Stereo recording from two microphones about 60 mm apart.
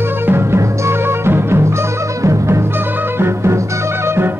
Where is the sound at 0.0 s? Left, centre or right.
Right.